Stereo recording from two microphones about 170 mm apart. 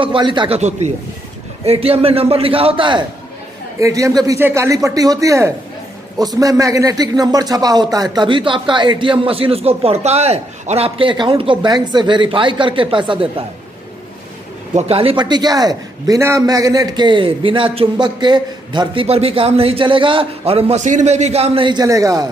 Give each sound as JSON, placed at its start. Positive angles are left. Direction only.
{"t": 0.0, "sound": "a man's voice", "side_deg": -30}
{"t": 0.6, "sound": "a man's voice", "side_deg": -40}
{"t": 3.8, "sound": "a man's voice", "side_deg": -20}
{"t": 14.8, "sound": "a man's voice", "side_deg": -35}